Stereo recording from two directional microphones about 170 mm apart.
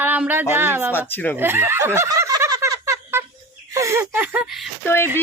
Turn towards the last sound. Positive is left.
turn(degrees=15)  # may be behind; listen again after turning